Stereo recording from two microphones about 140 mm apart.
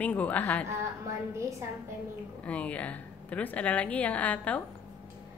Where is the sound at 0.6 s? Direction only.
20° right (ahead or behind).